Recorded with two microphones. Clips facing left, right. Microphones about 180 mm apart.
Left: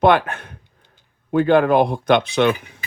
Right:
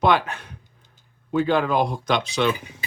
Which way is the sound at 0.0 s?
55° left (ahead or behind).